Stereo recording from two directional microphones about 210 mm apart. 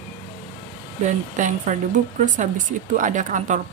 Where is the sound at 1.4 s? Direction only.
35° right (ahead or behind).